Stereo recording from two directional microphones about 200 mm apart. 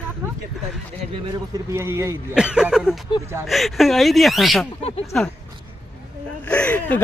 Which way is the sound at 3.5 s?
Centre (ahead or behind).